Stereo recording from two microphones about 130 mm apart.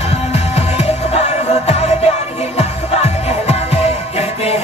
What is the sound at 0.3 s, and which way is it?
Music, 55° left (ahead or behind).